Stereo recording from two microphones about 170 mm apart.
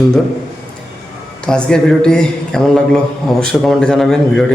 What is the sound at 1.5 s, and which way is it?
A man's voice, 5° left (ahead or behind).